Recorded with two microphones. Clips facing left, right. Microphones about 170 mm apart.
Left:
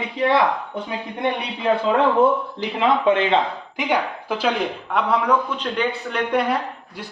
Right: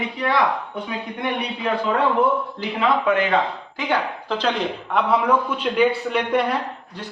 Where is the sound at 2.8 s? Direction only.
25° left (ahead or behind).